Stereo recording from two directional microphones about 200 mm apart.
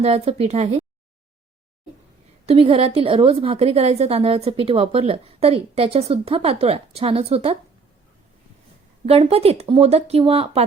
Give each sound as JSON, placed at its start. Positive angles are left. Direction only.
{"t": 0.0, "sound": "speech", "side_deg": -30}
{"t": 2.5, "sound": "a woman's voice", "side_deg": -30}
{"t": 9.0, "sound": "a woman's voice", "side_deg": -30}